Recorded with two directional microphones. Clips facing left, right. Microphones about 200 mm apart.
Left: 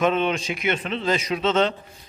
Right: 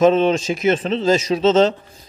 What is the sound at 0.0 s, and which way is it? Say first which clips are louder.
A man's voice: right 7 dB; 30° right (ahead or behind).